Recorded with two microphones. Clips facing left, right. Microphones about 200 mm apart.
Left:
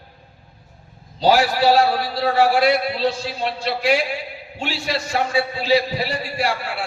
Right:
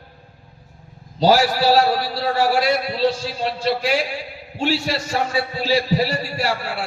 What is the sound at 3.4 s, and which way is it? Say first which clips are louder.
A man's voice: right 2 dB; 40° right (ahead or behind).